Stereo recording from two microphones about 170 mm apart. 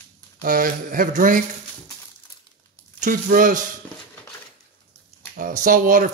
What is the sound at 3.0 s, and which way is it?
Speech, 55° right (ahead or behind).